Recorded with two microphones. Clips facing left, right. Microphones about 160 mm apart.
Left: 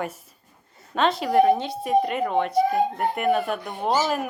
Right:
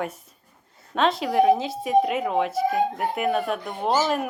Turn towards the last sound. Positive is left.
turn(degrees=0)  # may be behind; listen again after turning